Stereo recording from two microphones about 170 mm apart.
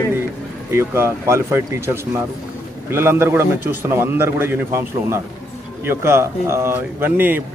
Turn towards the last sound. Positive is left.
turn(degrees=-10)  # may be behind; listen again after turning